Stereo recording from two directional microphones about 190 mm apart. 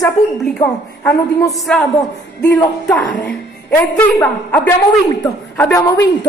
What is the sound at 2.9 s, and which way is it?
A woman's voice, 5° left (ahead or behind).